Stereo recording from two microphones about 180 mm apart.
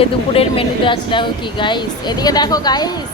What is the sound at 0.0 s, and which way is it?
Speech, 30° left (ahead or behind).